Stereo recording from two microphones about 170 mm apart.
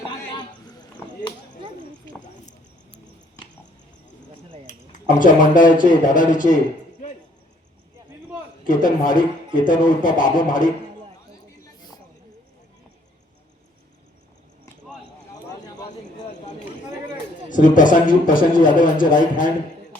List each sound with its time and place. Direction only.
0.1 s a sound: 25° left (ahead or behind)
4.9 s a man's voice: 50° left (ahead or behind)
8.6 s a man's voice: 50° left (ahead or behind)
17.5 s a man's voice: 50° left (ahead or behind)